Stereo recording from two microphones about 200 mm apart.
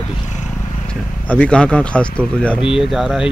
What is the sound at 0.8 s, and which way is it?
Speech, 5° left (ahead or behind).